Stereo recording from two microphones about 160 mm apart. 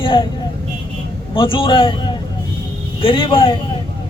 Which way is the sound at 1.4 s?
30° left (ahead or behind).